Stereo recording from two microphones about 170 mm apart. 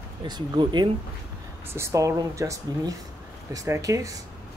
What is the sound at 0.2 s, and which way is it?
Speech, 25° right (ahead or behind).